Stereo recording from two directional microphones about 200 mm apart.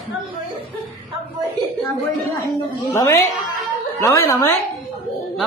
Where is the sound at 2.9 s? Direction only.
15° left (ahead or behind).